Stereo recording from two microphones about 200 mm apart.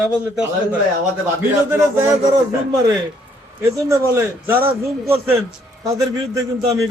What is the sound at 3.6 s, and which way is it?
Speech, 15° right (ahead or behind).